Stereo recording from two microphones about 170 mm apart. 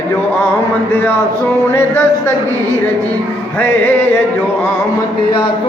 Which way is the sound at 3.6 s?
10° left (ahead or behind).